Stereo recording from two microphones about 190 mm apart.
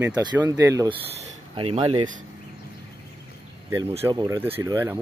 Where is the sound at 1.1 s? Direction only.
30° right (ahead or behind).